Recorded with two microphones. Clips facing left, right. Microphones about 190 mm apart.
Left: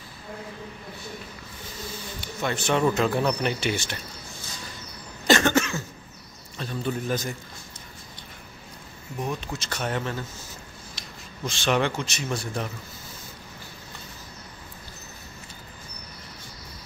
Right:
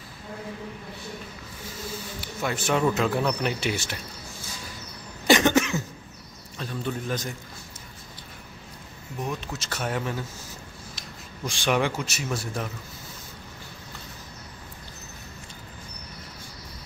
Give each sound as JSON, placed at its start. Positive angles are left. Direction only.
{"t": 2.4, "sound": "speech", "side_deg": -5}
{"t": 5.2, "sound": "cough", "side_deg": -15}
{"t": 6.6, "sound": "speech", "side_deg": 0}
{"t": 9.2, "sound": "speech", "side_deg": 0}
{"t": 11.0, "sound": "rub", "side_deg": 0}
{"t": 11.4, "sound": "speech", "side_deg": -15}